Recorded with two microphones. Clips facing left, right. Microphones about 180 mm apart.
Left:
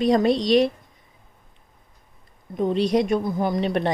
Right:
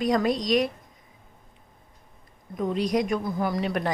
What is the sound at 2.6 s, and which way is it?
A woman's voice, 30° left (ahead or behind).